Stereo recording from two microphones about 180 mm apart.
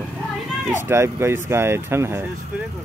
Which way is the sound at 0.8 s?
15° right (ahead or behind).